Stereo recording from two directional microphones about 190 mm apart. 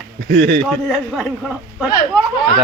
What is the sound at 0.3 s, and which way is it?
Speech, 65° right (ahead or behind).